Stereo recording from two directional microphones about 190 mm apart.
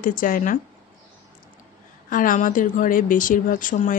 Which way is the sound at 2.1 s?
45° left (ahead or behind).